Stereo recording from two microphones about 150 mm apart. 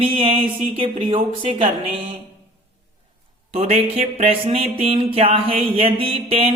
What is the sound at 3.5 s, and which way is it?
Music, 45° right (ahead or behind).